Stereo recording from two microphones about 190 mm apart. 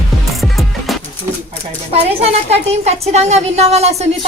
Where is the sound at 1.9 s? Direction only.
35° right (ahead or behind).